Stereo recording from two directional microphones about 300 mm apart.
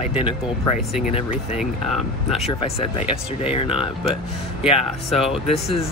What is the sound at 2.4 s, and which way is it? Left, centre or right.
Speech, centre.